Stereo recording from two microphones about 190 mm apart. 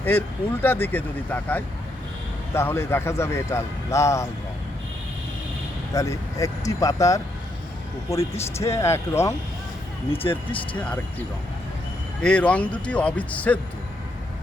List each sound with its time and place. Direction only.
0.0 s a man's voice: 10° left (ahead or behind)
5.9 s a man's voice: 15° left (ahead or behind)
8.6 s a man's voice: 15° left (ahead or behind)
10.8 s a man's voice: 5° left (ahead or behind)
12.2 s a man's voice: 5° left (ahead or behind)